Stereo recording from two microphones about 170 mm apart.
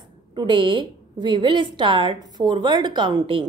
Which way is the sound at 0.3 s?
30° right (ahead or behind).